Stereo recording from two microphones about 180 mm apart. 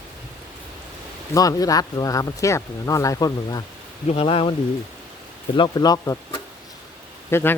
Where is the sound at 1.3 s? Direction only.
20° left (ahead or behind).